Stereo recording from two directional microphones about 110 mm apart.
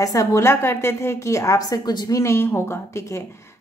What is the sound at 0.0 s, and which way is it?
A woman's voice, 30° left (ahead or behind).